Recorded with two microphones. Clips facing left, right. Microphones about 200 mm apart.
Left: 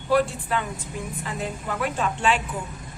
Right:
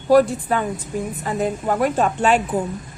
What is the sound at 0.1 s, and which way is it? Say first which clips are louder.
A woman's voice: right 7 dB; 40° right (ahead or behind).